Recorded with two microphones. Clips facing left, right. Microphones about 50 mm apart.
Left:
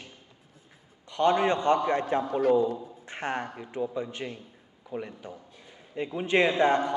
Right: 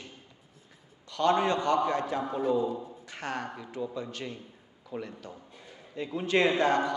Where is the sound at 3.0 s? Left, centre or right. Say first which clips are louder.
Left 5 dB; left.